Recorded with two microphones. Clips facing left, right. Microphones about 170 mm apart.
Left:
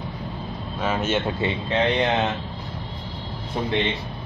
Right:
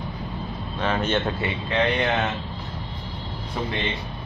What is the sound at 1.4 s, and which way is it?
Speech, 20° left (ahead or behind).